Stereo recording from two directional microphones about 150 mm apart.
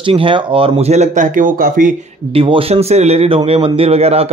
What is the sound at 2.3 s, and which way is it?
Speech, 35° right (ahead or behind).